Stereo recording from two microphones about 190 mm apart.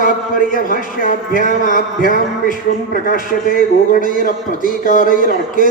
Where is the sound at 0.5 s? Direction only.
45° left (ahead or behind).